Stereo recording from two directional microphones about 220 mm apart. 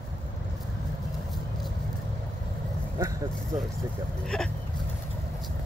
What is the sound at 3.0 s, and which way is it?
Vehicle, 15° right (ahead or behind).